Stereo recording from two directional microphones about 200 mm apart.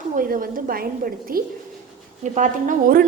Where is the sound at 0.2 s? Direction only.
45° right (ahead or behind).